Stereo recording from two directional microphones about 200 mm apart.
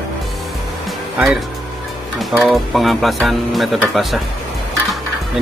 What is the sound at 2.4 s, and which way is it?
A man's voice, centre (ahead or behind).